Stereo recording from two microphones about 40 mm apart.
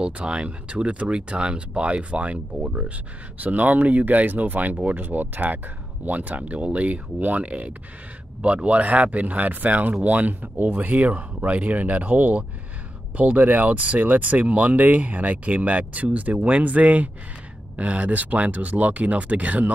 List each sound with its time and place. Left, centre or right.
0.0 s speech: right
3.3 s speech: right